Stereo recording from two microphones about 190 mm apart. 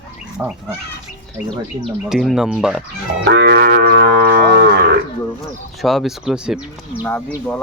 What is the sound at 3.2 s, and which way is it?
Livestock, 60° right (ahead or behind).